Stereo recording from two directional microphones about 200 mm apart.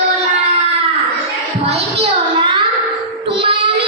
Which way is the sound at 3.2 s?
25° right (ahead or behind).